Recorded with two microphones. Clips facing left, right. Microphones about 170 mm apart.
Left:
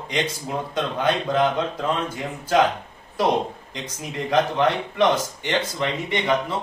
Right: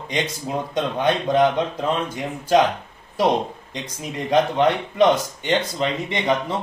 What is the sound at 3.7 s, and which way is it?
Speech, 20° right (ahead or behind).